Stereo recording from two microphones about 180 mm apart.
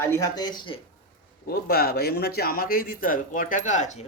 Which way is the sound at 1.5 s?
60° left (ahead or behind).